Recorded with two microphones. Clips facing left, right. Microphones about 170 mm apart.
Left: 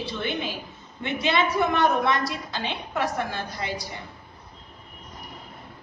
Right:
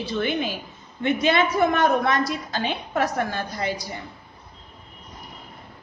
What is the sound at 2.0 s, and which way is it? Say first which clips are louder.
A woman's voice: right 2 dB; 45° right (ahead or behind).